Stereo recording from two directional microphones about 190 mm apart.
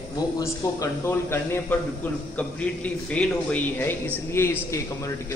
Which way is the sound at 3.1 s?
5° left (ahead or behind).